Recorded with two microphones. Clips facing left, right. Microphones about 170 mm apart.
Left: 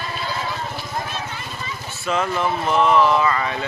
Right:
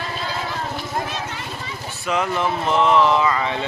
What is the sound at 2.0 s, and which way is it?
Speech, 15° right (ahead or behind).